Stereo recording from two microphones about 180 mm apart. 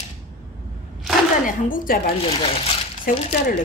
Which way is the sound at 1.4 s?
50° left (ahead or behind).